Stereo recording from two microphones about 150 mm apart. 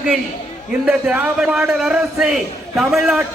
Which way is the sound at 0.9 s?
10° right (ahead or behind).